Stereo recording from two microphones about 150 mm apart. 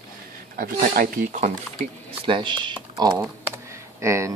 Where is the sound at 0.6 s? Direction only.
70° right (ahead or behind).